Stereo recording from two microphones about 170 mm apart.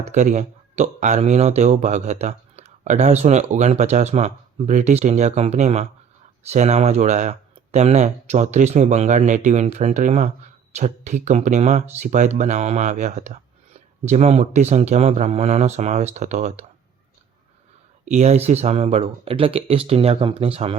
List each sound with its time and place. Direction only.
0.0 s speech: 45° right (ahead or behind)
18.0 s speech: 40° right (ahead or behind)